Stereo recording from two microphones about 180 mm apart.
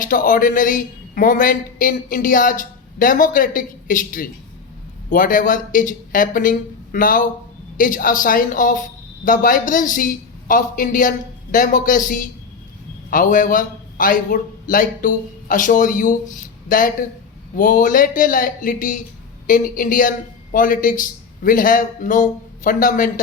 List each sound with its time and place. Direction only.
0.0 s a man's voice: 50° left (ahead or behind)
16.4 s a sound: 50° left (ahead or behind)
17.6 s a man's voice: 45° left (ahead or behind)